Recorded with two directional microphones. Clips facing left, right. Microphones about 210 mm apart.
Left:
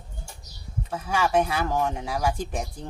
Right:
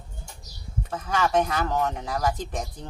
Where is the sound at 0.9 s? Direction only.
10° left (ahead or behind).